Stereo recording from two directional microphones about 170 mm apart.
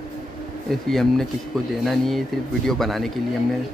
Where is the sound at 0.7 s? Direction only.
Centre (ahead or behind).